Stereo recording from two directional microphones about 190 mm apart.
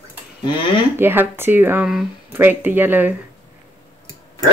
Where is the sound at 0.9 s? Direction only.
10° right (ahead or behind).